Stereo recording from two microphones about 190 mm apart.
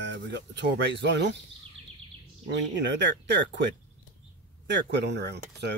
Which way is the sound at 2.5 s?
70° right (ahead or behind).